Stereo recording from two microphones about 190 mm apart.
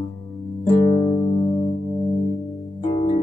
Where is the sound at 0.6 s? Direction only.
40° left (ahead or behind).